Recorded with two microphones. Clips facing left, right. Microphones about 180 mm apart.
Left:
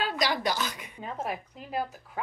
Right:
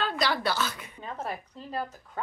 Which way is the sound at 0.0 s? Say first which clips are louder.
Even; 10° left (ahead or behind).